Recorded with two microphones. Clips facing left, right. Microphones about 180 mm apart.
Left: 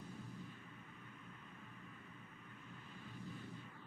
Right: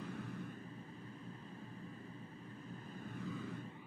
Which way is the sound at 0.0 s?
70° right (ahead or behind).